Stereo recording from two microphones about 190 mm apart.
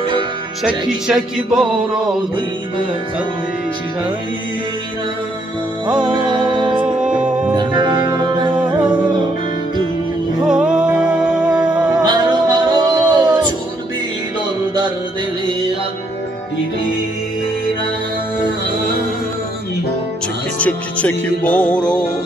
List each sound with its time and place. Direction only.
0.7 s music: 5° right (ahead or behind)
6.1 s music: 25° right (ahead or behind)
7.0 s music: 5° right (ahead or behind)
7.5 s music: 25° right (ahead or behind)
10.4 s music: 5° right (ahead or behind)
11.9 s music: 20° right (ahead or behind)
20.5 s music: 5° left (ahead or behind)